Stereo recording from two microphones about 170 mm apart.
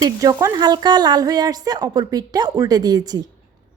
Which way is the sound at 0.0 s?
20° right (ahead or behind).